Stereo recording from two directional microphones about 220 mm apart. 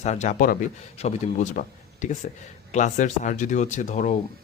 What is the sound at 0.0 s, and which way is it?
Speech, 30° left (ahead or behind).